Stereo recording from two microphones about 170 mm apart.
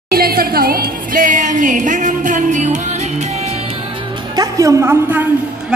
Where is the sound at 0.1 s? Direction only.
60° right (ahead or behind); by 3.6 s 40° right (ahead or behind).